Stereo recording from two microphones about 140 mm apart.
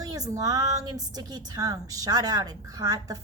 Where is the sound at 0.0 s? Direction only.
25° right (ahead or behind).